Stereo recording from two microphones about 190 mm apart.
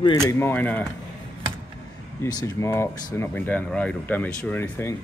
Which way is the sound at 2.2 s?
15° left (ahead or behind).